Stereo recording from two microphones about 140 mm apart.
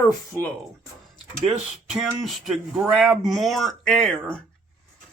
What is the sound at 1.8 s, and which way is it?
Speech, 5° right (ahead or behind).